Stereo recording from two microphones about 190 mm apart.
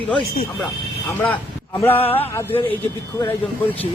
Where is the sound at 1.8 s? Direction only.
10° left (ahead or behind).